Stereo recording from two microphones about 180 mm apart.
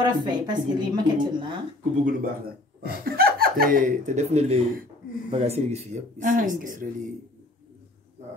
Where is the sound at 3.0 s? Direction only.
55° right (ahead or behind).